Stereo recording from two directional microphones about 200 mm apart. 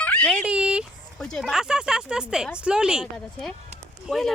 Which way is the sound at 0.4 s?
5° right (ahead or behind).